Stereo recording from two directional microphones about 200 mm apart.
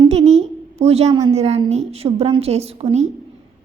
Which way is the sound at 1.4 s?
30° right (ahead or behind).